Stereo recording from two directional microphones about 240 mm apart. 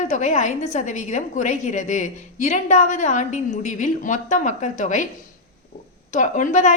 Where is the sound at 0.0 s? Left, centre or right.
Left.